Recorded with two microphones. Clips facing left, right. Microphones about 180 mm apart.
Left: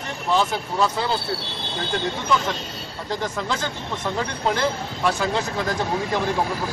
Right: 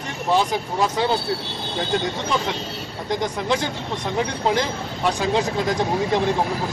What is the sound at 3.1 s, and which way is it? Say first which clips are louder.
Speech: right 4 dB; 15° right (ahead or behind).